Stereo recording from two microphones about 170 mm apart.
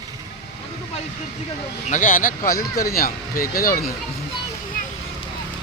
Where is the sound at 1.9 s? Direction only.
50° left (ahead or behind).